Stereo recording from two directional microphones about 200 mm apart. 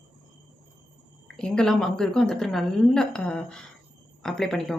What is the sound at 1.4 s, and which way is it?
A woman's voice, 5° left (ahead or behind).